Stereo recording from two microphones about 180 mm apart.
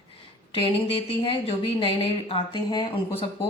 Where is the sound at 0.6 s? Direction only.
30° left (ahead or behind).